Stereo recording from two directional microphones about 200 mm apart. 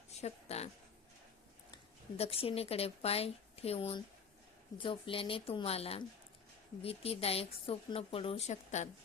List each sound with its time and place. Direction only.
0.2 s speech: 35° left (ahead or behind)
1.7 s a woman's voice: 30° left (ahead or behind)